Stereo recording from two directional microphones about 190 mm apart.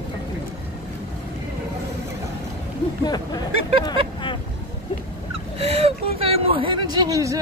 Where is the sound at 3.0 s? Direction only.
20° left (ahead or behind).